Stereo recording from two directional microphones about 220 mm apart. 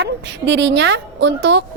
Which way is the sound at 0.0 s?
50° right (ahead or behind).